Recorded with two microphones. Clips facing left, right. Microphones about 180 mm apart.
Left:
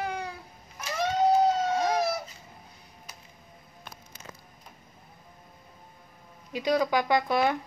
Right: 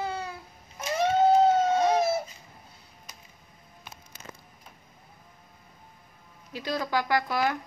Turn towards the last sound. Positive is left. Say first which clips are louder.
# left 2 dB
turn(degrees=20)  # may be behind; listen again after turning